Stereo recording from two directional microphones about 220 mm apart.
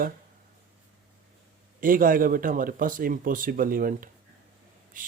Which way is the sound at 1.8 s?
40° right (ahead or behind).